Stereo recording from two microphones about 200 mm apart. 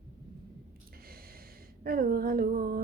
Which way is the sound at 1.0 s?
50° right (ahead or behind).